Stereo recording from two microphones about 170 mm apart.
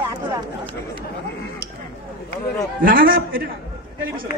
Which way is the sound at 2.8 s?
60° right (ahead or behind).